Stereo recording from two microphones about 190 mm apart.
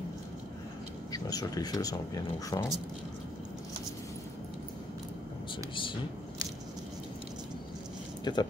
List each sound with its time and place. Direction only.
1.1 s speech: 20° left (ahead or behind)
8.2 s speech: 20° left (ahead or behind)